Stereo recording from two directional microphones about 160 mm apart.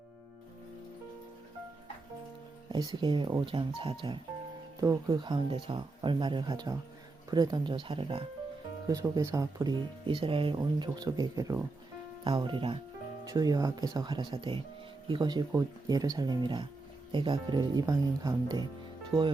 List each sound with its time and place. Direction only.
2.7 s speech: 25° right (ahead or behind)
8.9 s speech: 20° right (ahead or behind)
10.1 s speech: 35° right (ahead or behind)
12.2 s speech: 30° right (ahead or behind)